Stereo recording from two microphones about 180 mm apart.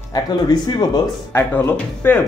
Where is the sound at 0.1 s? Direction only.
25° left (ahead or behind).